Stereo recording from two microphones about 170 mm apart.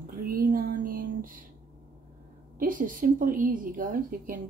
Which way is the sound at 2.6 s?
50° right (ahead or behind).